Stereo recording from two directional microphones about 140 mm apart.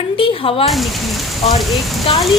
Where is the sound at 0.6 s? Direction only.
Centre (ahead or behind).